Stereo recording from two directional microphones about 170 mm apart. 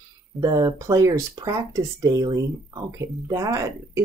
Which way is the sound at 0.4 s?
20° right (ahead or behind).